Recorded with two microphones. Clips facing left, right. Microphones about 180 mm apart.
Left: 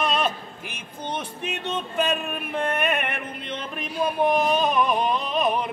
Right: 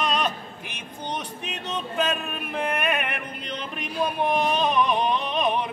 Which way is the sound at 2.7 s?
Centre (ahead or behind).